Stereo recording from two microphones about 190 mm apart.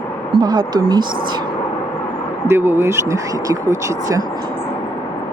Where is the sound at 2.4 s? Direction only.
10° right (ahead or behind).